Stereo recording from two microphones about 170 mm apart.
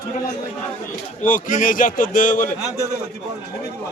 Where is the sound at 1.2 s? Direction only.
50° left (ahead or behind).